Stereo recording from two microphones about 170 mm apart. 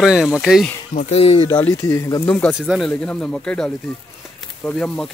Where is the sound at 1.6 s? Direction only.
15° left (ahead or behind).